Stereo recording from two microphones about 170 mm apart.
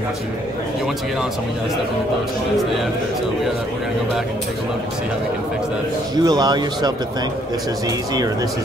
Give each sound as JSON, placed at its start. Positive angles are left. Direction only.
{"t": 6.2, "sound": "speech", "side_deg": -25}